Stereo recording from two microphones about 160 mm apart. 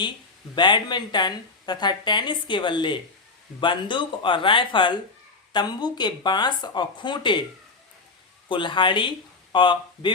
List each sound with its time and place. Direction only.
0.5 s speech: 30° left (ahead or behind)
8.4 s speech: 30° left (ahead or behind)